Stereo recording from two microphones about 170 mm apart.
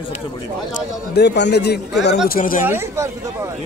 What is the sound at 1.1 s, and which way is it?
A man's voice, 90° left.